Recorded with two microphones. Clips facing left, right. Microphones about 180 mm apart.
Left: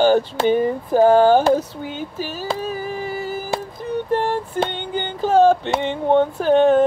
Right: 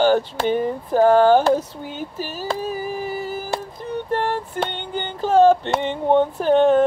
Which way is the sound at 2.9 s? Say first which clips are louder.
Left 1 dB; 5° right (ahead or behind).